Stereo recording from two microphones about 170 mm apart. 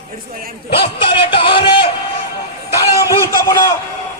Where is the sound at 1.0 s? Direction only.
30° left (ahead or behind).